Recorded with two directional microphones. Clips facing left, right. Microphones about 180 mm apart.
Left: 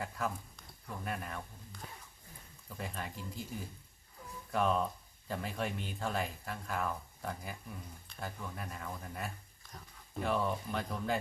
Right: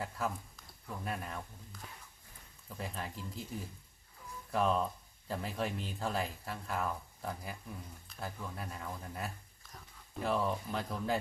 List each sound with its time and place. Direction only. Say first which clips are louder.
0.0 s speech: even; centre (ahead or behind)